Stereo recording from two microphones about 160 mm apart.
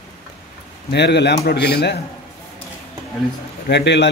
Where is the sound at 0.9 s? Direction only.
90° left.